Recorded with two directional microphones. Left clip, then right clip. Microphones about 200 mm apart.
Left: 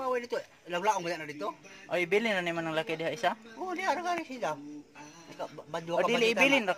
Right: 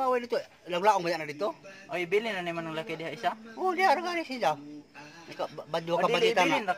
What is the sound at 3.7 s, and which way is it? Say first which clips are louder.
A man's voice: right 6 dB; 50° right (ahead or behind).